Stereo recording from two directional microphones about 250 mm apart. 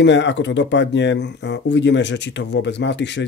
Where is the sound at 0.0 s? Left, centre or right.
Left.